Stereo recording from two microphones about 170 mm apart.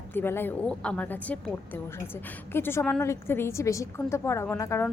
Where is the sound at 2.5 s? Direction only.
15° left (ahead or behind).